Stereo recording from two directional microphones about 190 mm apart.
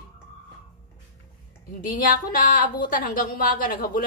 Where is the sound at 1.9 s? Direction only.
45° left (ahead or behind).